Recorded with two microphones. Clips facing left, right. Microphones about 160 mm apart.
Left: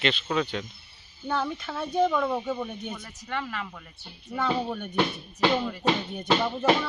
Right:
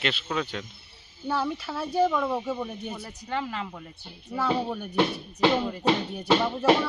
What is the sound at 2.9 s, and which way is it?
Speech, 25° right (ahead or behind).